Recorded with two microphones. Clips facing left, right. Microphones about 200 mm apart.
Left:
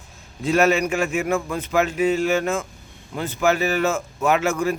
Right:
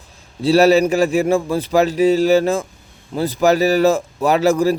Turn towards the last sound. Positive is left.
turn(degrees=-35)  # may be behind; listen again after turning